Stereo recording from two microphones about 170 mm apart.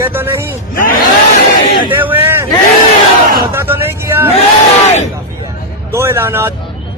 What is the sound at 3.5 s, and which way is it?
Speech, 15° right (ahead or behind).